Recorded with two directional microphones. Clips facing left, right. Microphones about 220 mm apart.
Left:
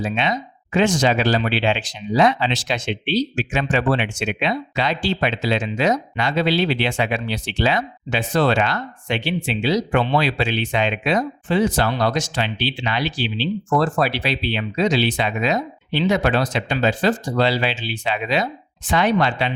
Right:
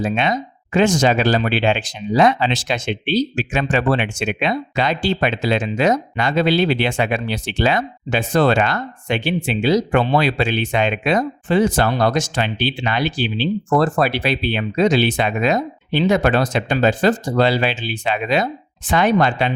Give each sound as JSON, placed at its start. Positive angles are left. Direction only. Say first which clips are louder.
{"t": 0.0, "sound": "speech", "louder": "right 3 dB", "side_deg": -50}